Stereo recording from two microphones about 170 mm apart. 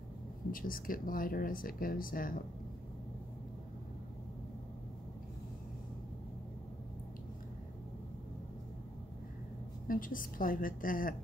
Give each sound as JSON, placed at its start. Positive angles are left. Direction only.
{"t": 0.5, "sound": "speech", "side_deg": 55}
{"t": 9.8, "sound": "speech", "side_deg": 55}